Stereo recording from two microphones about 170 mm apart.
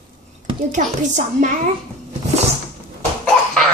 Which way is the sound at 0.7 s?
45° right (ahead or behind).